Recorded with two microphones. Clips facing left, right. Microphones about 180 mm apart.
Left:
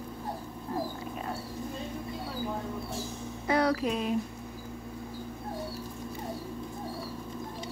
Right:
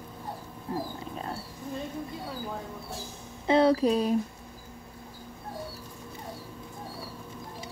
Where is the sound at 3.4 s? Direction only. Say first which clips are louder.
Right 5 dB; 25° right (ahead or behind).